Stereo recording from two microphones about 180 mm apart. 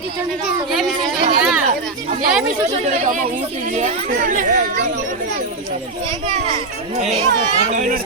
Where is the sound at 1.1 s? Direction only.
55° right (ahead or behind).